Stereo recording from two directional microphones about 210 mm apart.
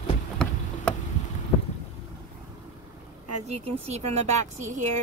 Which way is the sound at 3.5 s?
30° right (ahead or behind).